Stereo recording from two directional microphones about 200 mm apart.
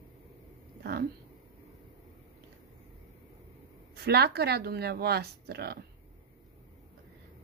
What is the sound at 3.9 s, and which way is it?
Speech, 55° right (ahead or behind).